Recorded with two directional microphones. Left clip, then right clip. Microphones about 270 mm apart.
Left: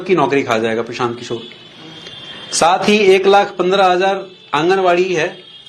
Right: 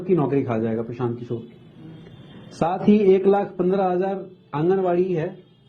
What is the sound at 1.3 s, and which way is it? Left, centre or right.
Speech, centre.